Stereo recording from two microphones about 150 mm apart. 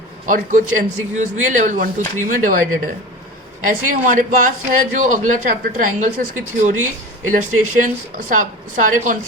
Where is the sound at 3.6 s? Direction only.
60° right (ahead or behind).